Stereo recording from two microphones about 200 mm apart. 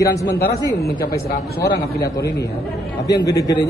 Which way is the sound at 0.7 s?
50° left (ahead or behind).